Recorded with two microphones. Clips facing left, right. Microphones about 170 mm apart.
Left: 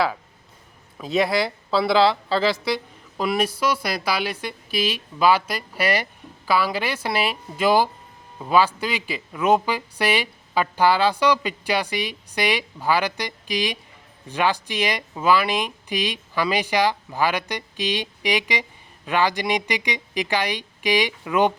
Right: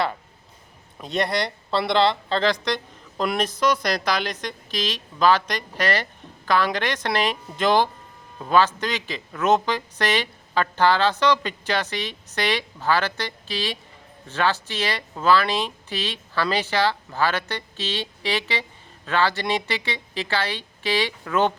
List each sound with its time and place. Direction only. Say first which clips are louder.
0.9 s speech: left 3 dB; centre (ahead or behind)